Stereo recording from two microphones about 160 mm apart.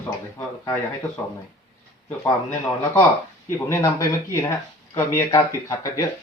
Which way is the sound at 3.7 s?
20° left (ahead or behind).